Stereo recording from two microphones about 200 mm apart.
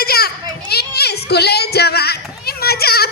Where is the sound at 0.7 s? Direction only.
55° left (ahead or behind).